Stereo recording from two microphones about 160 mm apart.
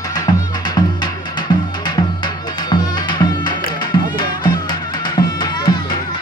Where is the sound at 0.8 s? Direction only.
30° left (ahead or behind).